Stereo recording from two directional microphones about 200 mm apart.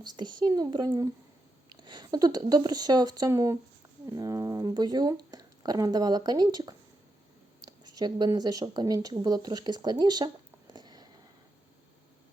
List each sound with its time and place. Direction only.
0.0 s speech: 20° right (ahead or behind)